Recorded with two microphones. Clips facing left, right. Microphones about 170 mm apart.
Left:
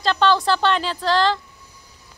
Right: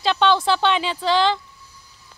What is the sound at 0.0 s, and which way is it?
Speech, centre (ahead or behind).